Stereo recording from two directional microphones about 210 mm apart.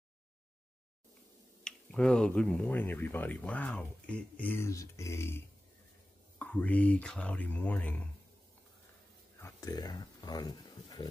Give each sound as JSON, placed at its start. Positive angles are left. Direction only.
{"t": 1.6, "sound": "speech", "side_deg": 5}
{"t": 9.4, "sound": "speech", "side_deg": 15}